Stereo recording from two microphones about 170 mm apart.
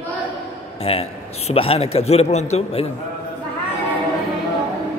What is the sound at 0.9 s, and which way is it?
Mantra, 35° left (ahead or behind).